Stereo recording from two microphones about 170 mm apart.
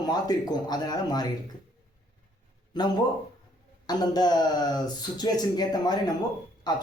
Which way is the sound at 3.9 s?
25° left (ahead or behind).